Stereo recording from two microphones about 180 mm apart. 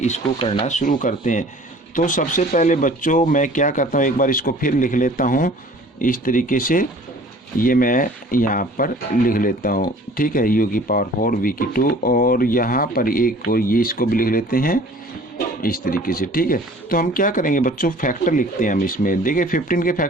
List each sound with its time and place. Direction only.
0.0 s speech: 35° left (ahead or behind)